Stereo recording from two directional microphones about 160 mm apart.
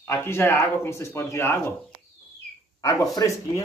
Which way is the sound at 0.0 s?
15° left (ahead or behind).